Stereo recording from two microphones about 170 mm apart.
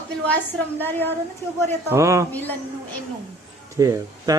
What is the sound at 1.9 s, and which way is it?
Speech, 15° right (ahead or behind).